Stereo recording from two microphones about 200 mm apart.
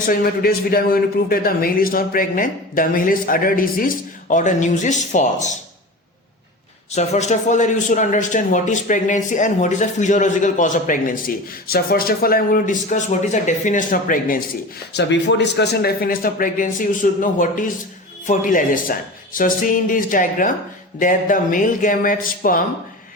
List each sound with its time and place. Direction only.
0.1 s a man's voice: 50° left (ahead or behind)
6.9 s speech: 35° left (ahead or behind)
14.9 s a man's voice: 60° left (ahead or behind); by 22.6 s 45° left (ahead or behind)